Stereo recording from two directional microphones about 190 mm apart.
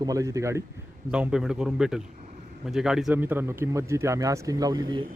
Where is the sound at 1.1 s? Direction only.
5° right (ahead or behind).